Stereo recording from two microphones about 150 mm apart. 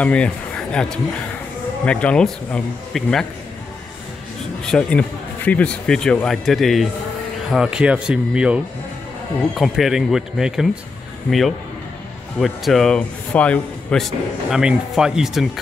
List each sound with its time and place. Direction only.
0.0 s speech: 10° left (ahead or behind)
4.6 s speech: 5° left (ahead or behind)
9.6 s speech: centre (ahead or behind)